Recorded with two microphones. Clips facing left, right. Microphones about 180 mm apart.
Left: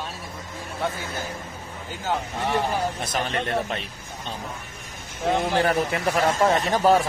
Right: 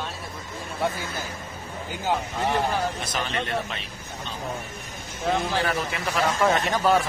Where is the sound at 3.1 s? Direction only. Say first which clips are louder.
Left 2 dB; 45° left (ahead or behind).